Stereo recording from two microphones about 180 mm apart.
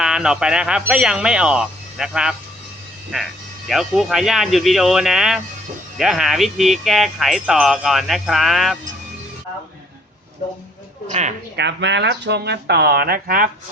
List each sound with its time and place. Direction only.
0.0 s speech: 5° right (ahead or behind)
3.7 s speech: centre (ahead or behind)
11.1 s a woman's voice: 40° right (ahead or behind)
11.5 s speech: 75° right (ahead or behind); by 13.5 s 50° right (ahead or behind)